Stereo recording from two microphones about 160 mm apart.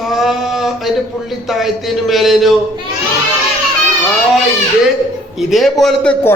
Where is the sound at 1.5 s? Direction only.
Centre (ahead or behind).